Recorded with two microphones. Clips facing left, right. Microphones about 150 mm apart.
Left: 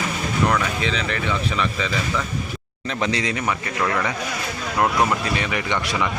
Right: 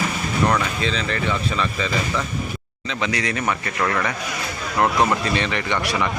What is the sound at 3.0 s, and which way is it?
A man's voice, 25° left (ahead or behind).